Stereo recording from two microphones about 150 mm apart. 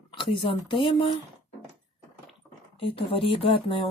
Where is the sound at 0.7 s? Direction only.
35° left (ahead or behind).